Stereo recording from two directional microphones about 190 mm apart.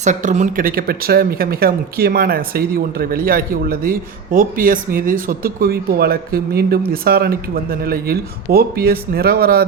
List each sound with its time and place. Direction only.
0.0 s speech: 40° right (ahead or behind)